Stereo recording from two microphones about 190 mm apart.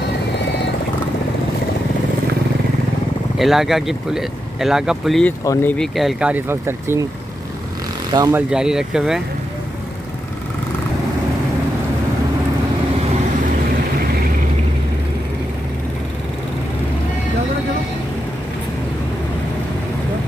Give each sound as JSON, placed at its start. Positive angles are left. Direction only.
{"t": 3.3, "sound": "speech", "side_deg": 0}
{"t": 5.4, "sound": "speech", "side_deg": 15}
{"t": 5.9, "sound": "speech", "side_deg": -5}
{"t": 8.1, "sound": "speech", "side_deg": -20}
{"t": 8.4, "sound": "speech", "side_deg": -5}